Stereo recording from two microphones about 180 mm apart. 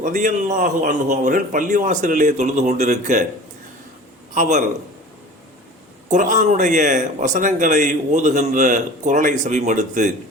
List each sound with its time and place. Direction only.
0.0 s a man's voice: 45° right (ahead or behind)
4.4 s a man's voice: 40° right (ahead or behind)
6.1 s a man's voice: 45° right (ahead or behind)